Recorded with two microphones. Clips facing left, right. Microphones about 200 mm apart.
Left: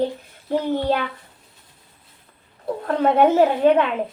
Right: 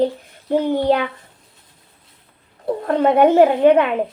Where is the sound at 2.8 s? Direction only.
15° right (ahead or behind).